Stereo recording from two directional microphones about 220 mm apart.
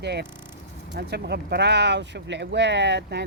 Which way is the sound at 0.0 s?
50° right (ahead or behind).